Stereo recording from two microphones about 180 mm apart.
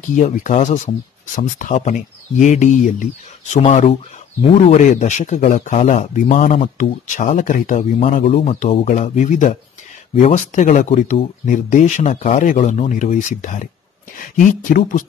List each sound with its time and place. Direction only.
0.1 s speech: 45° left (ahead or behind)